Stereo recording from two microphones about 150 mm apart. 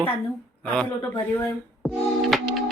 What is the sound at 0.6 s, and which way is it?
Speech, 5° left (ahead or behind).